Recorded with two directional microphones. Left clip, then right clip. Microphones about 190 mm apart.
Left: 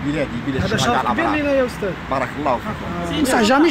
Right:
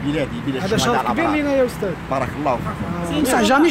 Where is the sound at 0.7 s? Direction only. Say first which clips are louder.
Even; 45° right (ahead or behind).